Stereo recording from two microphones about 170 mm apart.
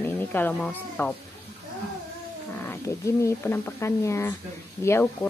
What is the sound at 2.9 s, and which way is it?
Speech, 20° left (ahead or behind).